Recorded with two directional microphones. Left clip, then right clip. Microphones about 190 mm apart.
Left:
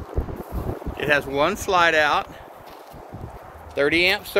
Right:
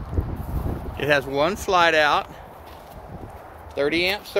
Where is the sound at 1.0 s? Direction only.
15° right (ahead or behind).